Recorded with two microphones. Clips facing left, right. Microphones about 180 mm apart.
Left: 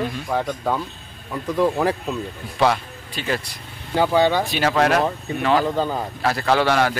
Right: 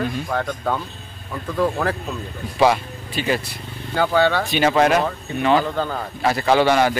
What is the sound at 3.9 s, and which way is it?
Speech, 15° left (ahead or behind).